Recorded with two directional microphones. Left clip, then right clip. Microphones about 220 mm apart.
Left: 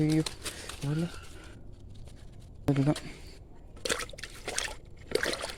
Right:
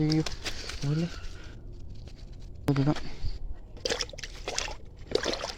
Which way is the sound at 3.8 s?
10° left (ahead or behind).